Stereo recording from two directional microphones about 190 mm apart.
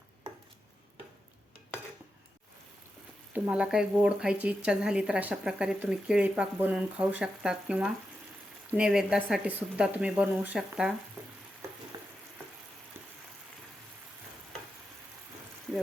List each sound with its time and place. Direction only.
3.3 s speech: 5° right (ahead or behind)
11.2 s frying: 10° right (ahead or behind)
11.9 s frying: 25° right (ahead or behind)
15.7 s frying: centre (ahead or behind)